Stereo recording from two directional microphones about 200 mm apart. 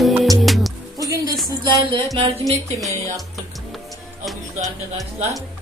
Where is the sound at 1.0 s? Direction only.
15° right (ahead or behind).